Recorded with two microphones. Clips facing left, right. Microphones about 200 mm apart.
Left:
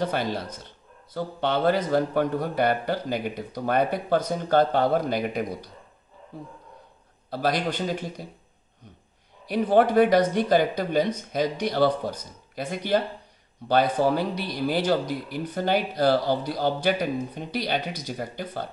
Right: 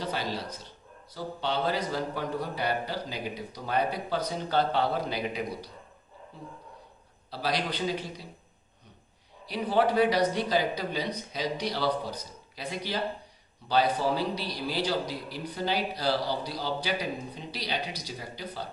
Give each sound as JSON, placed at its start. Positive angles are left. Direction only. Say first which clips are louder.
{"t": 0.0, "sound": "speech", "louder": "left 6 dB", "side_deg": 55}
{"t": 7.2, "sound": "speech", "louder": "left 5 dB", "side_deg": 50}
{"t": 9.5, "sound": "speech", "louder": "left 6 dB", "side_deg": 50}